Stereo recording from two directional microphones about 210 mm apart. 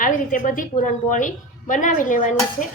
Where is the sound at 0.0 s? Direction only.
40° left (ahead or behind).